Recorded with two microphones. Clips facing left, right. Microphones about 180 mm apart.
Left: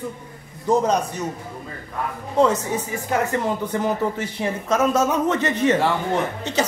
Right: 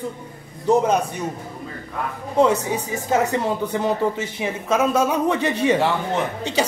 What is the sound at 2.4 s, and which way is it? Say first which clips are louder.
Speech: right 1 dB; 15° right (ahead or behind).